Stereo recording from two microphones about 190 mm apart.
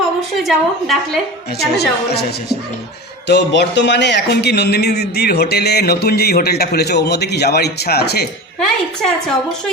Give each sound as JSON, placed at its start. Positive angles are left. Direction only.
{"t": 0.3, "sound": "a woman's voice", "side_deg": 0}
{"t": 1.5, "sound": "speech", "side_deg": 60}
{"t": 8.6, "sound": "a woman's voice", "side_deg": 5}